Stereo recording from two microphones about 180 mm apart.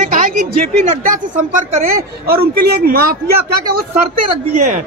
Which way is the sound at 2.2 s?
60° right (ahead or behind).